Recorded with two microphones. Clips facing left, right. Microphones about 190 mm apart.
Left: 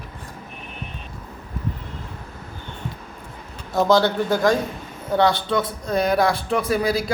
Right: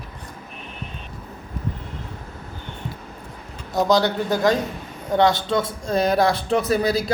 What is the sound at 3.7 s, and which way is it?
Speech, 15° right (ahead or behind).